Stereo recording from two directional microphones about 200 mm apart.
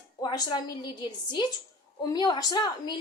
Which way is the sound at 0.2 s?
20° left (ahead or behind).